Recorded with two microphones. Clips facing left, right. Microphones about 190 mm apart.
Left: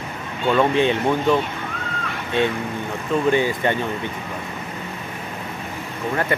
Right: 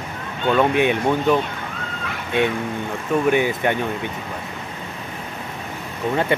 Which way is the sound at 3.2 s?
15° right (ahead or behind).